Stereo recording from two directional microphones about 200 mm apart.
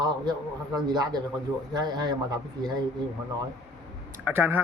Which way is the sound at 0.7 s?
20° right (ahead or behind).